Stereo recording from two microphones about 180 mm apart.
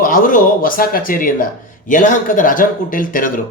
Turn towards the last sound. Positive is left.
turn(degrees=50)  # may be behind; listen again after turning